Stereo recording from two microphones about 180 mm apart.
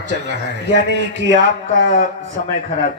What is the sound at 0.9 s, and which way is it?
Speech, 80° right.